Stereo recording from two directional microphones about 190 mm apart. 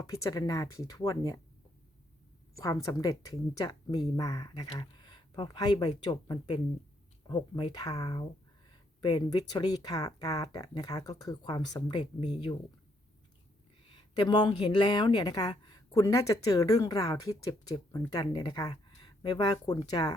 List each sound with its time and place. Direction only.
0.0 s speech: 15° left (ahead or behind)
2.6 s a woman's voice: 15° left (ahead or behind)
13.9 s a woman's voice: 25° left (ahead or behind)